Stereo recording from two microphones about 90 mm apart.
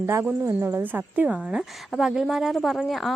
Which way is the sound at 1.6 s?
5° right (ahead or behind).